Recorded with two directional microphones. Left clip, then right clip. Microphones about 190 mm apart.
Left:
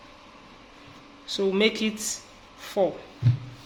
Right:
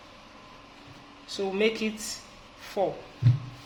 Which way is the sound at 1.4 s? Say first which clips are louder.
Left 3 dB; 35° left (ahead or behind).